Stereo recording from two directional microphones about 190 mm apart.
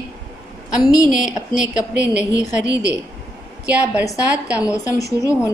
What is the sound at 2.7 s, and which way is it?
Speech, 15° left (ahead or behind).